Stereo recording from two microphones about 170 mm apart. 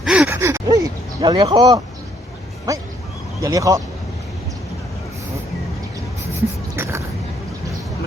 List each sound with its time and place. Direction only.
0.0 s gasp: 5° right (ahead or behind)
1.2 s speech: 25° right (ahead or behind)
6.8 s a sound: 15° right (ahead or behind)